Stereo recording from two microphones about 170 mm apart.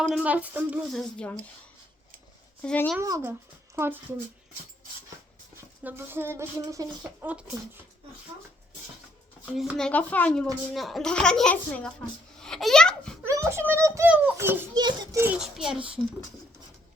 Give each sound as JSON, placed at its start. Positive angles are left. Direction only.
{"t": 0.1, "sound": "speech", "side_deg": -5}
{"t": 1.1, "sound": "speech", "side_deg": 5}
{"t": 2.6, "sound": "speech", "side_deg": 10}
{"t": 3.0, "sound": "speech", "side_deg": -15}
{"t": 5.8, "sound": "speech", "side_deg": -15}
{"t": 9.5, "sound": "speech", "side_deg": -5}
{"t": 13.2, "sound": "speech", "side_deg": -15}
{"t": 14.8, "sound": "a child's voice", "side_deg": -25}
{"t": 15.2, "sound": "speech", "side_deg": -5}